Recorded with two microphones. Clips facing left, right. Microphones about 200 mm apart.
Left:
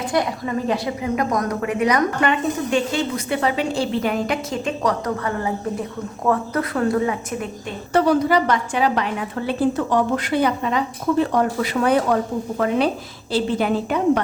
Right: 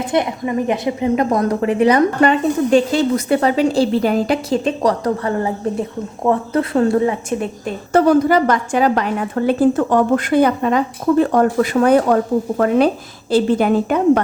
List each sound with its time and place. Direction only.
0.1 s a woman's voice: 20° right (ahead or behind)
7.9 s a woman's voice: 50° right (ahead or behind)